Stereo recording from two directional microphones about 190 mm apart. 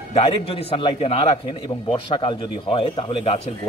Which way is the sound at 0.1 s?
30° left (ahead or behind).